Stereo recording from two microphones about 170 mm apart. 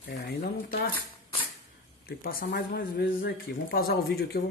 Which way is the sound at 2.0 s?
60° left (ahead or behind).